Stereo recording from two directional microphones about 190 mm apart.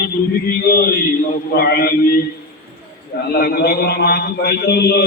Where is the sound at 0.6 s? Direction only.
55° left (ahead or behind).